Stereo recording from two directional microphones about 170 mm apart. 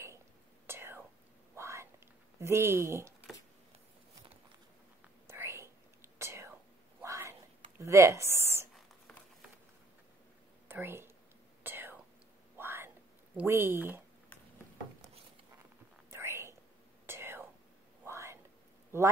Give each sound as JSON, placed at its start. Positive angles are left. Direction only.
{"t": 0.7, "sound": "whispering", "side_deg": -15}
{"t": 1.5, "sound": "cat", "side_deg": -15}
{"t": 2.4, "sound": "speech", "side_deg": -15}
{"t": 5.2, "sound": "whispering", "side_deg": -15}
{"t": 7.0, "sound": "cat", "side_deg": -15}
{"t": 7.8, "sound": "a sound", "side_deg": -15}
{"t": 8.7, "sound": "a sound", "side_deg": 0}
{"t": 10.7, "sound": "a sound", "side_deg": -15}
{"t": 11.6, "sound": "whispering", "side_deg": -10}
{"t": 13.4, "sound": "speech", "side_deg": -15}
{"t": 16.1, "sound": "whispering", "side_deg": -15}